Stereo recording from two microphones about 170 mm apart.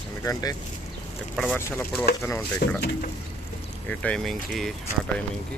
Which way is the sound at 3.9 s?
5° left (ahead or behind).